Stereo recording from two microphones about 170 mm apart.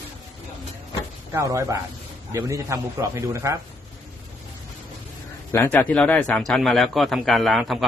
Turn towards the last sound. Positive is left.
turn(degrees=0)  # may be behind; listen again after turning